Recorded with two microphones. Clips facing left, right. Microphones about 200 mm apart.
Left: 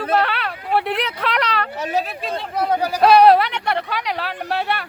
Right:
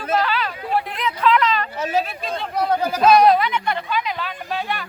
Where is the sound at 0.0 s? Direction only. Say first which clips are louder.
Left 1 dB; 60° left (ahead or behind).